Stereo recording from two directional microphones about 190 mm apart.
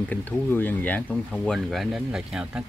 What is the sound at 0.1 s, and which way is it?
Speech, 10° left (ahead or behind).